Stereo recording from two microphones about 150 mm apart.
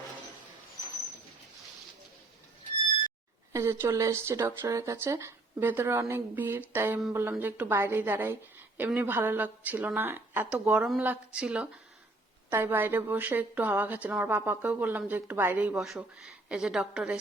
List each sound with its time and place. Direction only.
3.5 s a woman's voice: 20° right (ahead or behind)